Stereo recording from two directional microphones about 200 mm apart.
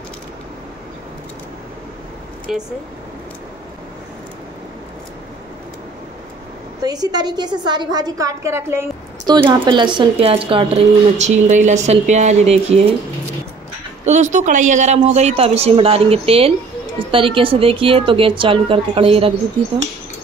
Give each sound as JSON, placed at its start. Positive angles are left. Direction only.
{"t": 2.5, "sound": "speech", "side_deg": 0}
{"t": 6.8, "sound": "a woman's voice", "side_deg": -20}
{"t": 14.0, "sound": "a woman's voice", "side_deg": -35}